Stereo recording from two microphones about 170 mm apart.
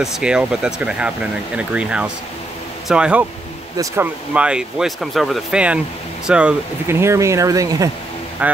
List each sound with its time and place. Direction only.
0.0 s speech: 5° right (ahead or behind)
3.7 s speech: 15° right (ahead or behind)
8.4 s speech: 10° right (ahead or behind)